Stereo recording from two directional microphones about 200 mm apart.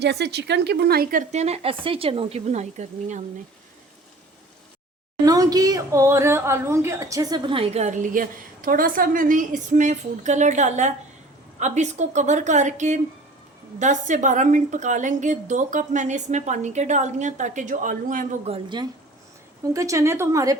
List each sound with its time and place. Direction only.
0.0 s a woman's voice: 55° right (ahead or behind); by 3.2 s 35° right (ahead or behind)
5.2 s a woman's voice: 20° right (ahead or behind)
19.7 s a woman's voice: 15° right (ahead or behind)